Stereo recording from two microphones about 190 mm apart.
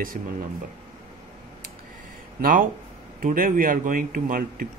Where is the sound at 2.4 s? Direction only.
50° right (ahead or behind).